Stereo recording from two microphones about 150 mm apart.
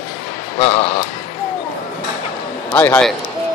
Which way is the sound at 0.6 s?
45° left (ahead or behind).